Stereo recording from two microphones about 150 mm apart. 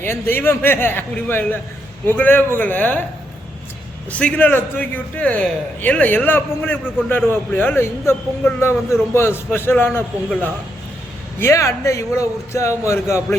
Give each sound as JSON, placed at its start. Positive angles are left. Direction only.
{"t": 0.0, "sound": "a man's voice", "side_deg": 15}
{"t": 4.1, "sound": "a man's voice", "side_deg": 10}